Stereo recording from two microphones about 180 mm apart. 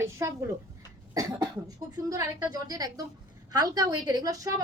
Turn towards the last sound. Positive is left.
turn(degrees=-20)  # may be behind; listen again after turning